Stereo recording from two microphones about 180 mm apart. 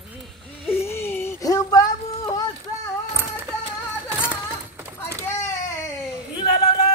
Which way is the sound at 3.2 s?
15° right (ahead or behind).